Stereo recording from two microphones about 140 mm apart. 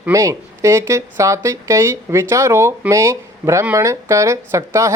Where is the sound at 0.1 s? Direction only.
20° right (ahead or behind).